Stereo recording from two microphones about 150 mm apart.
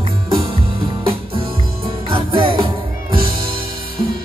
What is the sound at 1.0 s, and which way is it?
Music, 35° right (ahead or behind).